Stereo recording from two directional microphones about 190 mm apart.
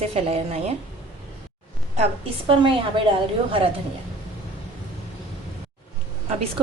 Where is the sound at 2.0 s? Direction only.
30° right (ahead or behind).